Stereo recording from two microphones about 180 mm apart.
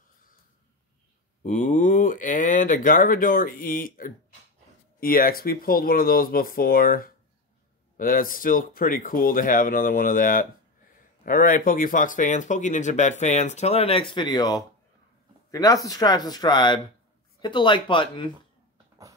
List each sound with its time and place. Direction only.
1.4 s speech: 45° left (ahead or behind); by 18.3 s 30° left (ahead or behind)